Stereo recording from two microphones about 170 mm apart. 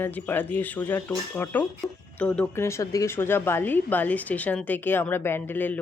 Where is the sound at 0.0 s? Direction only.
10° left (ahead or behind).